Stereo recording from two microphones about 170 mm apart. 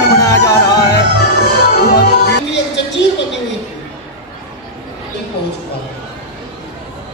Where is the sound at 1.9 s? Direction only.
75° left (ahead or behind); by 3.3 s 90° left.